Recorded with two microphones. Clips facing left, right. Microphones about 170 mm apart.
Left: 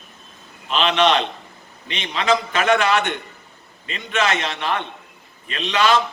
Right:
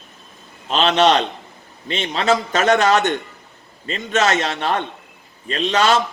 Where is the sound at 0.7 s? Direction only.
40° right (ahead or behind).